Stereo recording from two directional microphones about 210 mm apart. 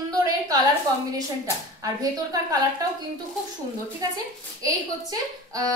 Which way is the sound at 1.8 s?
15° right (ahead or behind).